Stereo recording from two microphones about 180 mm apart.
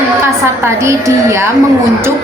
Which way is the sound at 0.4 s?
15° right (ahead or behind).